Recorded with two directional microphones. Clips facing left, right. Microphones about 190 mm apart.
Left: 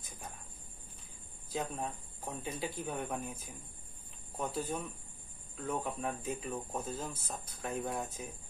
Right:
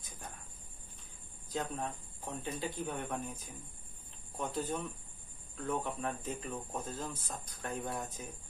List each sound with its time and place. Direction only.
1.5 s speech: 5° left (ahead or behind)